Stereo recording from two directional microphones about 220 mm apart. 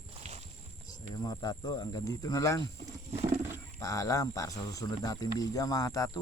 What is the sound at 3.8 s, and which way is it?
Speech, 15° left (ahead or behind).